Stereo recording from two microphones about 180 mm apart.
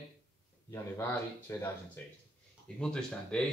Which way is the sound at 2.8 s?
5° left (ahead or behind).